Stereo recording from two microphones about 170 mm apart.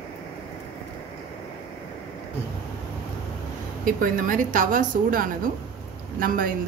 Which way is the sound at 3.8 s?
55° right (ahead or behind).